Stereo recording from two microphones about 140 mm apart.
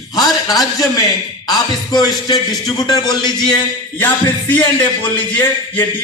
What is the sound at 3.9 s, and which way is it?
Music, 10° left (ahead or behind).